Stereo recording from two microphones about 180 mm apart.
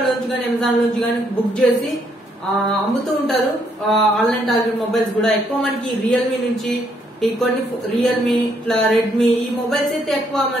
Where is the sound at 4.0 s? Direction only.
Centre (ahead or behind).